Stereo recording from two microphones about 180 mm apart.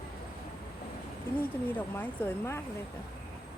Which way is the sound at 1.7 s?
10° left (ahead or behind).